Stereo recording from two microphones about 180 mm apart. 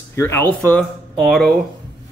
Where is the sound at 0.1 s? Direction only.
15° left (ahead or behind).